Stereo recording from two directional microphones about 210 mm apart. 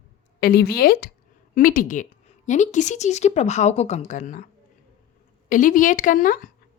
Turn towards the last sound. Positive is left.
turn(degrees=40)  # may be behind; listen again after turning